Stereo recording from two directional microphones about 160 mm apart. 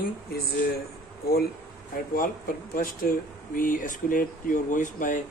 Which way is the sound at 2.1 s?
60° left (ahead or behind).